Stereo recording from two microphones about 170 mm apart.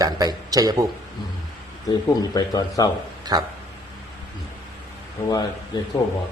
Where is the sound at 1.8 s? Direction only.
20° left (ahead or behind).